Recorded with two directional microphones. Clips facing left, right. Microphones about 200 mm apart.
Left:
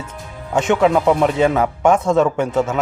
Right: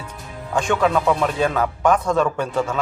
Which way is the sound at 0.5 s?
20° left (ahead or behind).